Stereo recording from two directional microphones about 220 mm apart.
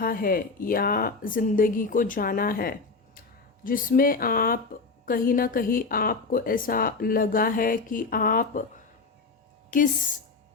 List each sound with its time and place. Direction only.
0.0 s a woman's voice: 40° left (ahead or behind)
9.6 s speech: 35° left (ahead or behind)